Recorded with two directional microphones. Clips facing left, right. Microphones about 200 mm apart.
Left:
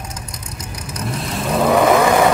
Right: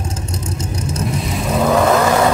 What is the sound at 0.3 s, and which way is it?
Vehicle, 25° right (ahead or behind).